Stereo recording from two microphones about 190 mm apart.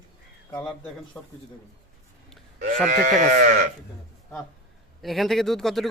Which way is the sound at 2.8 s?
40° right (ahead or behind).